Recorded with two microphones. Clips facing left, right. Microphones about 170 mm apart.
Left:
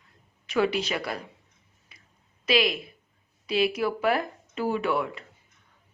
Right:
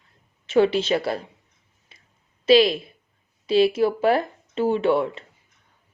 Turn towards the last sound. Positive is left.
turn(degrees=-25)  # may be behind; listen again after turning